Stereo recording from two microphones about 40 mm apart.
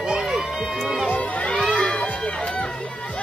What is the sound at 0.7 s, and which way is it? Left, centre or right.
Run, centre.